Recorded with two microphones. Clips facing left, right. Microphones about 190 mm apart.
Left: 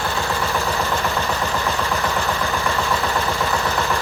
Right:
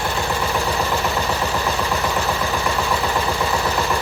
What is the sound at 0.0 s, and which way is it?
Vehicle, 15° right (ahead or behind).